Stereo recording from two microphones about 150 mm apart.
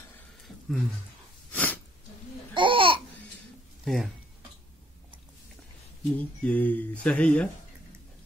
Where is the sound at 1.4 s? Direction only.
10° left (ahead or behind).